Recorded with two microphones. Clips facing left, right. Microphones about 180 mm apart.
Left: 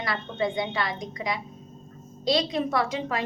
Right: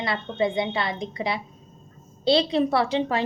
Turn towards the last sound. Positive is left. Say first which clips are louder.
# right 4 dB
turn(degrees=-30)  # may be behind; listen again after turning